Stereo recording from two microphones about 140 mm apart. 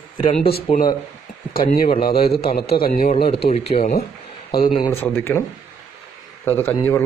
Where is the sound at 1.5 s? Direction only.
90° left.